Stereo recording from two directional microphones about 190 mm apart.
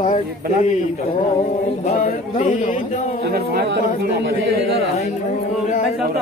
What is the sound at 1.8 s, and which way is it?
Speech, 40° left (ahead or behind).